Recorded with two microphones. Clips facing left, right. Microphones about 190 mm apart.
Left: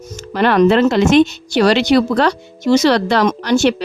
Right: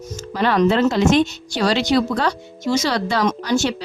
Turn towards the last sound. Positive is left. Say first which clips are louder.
# left 6 dB
turn(degrees=70)  # may be behind; listen again after turning